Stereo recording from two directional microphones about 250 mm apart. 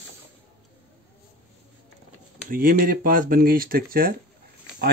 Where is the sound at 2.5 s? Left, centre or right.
Right.